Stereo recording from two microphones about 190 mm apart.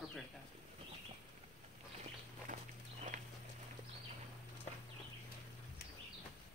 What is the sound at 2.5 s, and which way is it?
Walk, 45° right (ahead or behind).